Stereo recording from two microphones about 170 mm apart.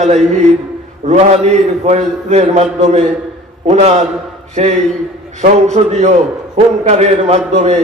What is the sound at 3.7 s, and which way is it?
A man's voice, 40° right (ahead or behind).